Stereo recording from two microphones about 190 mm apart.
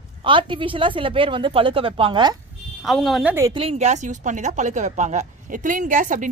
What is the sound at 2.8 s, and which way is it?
Speech, centre (ahead or behind).